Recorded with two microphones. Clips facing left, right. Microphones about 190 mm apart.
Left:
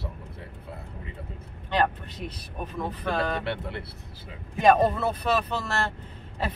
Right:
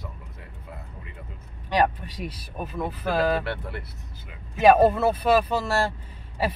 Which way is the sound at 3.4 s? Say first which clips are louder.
Left 1 dB; 25° left (ahead or behind).